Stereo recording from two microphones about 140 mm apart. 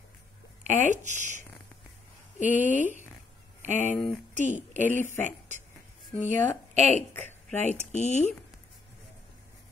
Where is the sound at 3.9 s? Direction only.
5° left (ahead or behind).